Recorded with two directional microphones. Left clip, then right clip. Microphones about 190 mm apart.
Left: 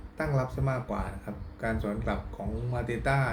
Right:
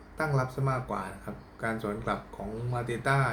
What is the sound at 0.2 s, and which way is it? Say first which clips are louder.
Speech: right 1 dB; 5° right (ahead or behind).